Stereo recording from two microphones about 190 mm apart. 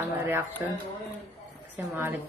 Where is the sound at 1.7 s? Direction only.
10° right (ahead or behind).